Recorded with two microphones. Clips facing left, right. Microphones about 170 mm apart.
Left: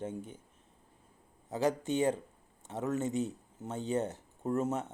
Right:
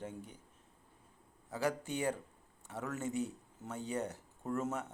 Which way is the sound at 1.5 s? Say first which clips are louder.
Left 6 dB; 25° left (ahead or behind).